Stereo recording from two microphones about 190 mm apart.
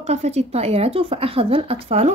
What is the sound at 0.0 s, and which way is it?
Speech, 35° right (ahead or behind).